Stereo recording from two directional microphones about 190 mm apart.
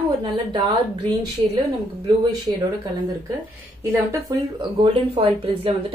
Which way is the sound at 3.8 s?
15° right (ahead or behind).